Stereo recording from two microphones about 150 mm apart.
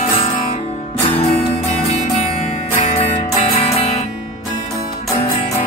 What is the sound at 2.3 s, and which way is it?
Music, 45° left (ahead or behind).